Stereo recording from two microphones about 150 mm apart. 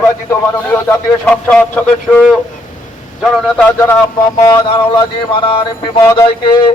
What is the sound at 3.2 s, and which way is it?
Speech, centre (ahead or behind).